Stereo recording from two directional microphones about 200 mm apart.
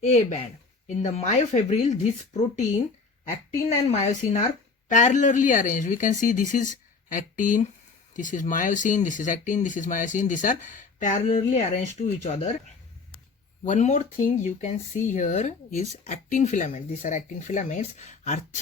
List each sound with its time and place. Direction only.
0.0 s speech: 35° left (ahead or behind)
3.8 s speech: 35° left (ahead or behind)
13.7 s speech: 35° left (ahead or behind)